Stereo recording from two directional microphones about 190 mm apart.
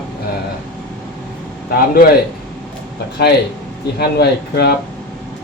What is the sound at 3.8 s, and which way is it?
Speech, 60° left (ahead or behind).